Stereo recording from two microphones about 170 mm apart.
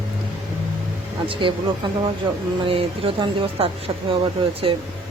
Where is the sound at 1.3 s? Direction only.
30° right (ahead or behind).